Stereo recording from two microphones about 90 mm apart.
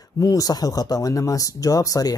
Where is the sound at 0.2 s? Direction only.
40° left (ahead or behind).